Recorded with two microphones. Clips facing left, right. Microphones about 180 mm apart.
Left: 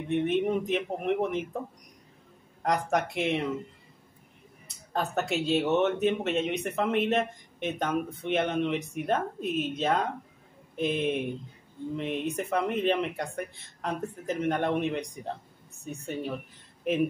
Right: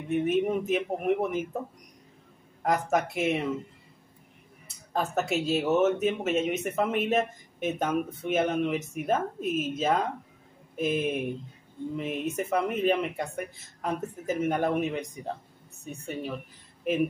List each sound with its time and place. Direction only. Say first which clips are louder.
0.1 s speech: right 1 dB; 5° right (ahead or behind)
2.6 s speech: right 1 dB; 5° right (ahead or behind)
4.6 s speech: right 1 dB; centre (ahead or behind)